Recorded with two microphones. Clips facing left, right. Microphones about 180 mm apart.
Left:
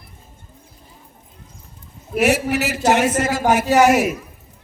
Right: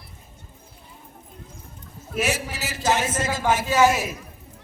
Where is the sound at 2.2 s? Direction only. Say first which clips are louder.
Left 9 dB; 65° left (ahead or behind).